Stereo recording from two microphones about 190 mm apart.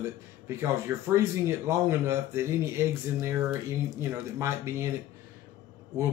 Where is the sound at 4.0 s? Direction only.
15° right (ahead or behind).